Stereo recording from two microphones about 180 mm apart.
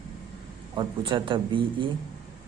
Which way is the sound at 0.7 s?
25° right (ahead or behind).